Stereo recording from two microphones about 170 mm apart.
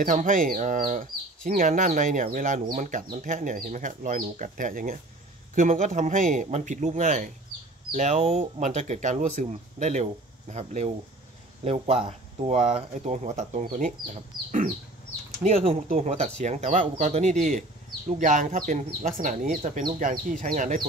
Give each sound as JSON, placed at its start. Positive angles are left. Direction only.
{"t": 0.0, "sound": "speech", "side_deg": -50}
{"t": 15.4, "sound": "speech", "side_deg": -35}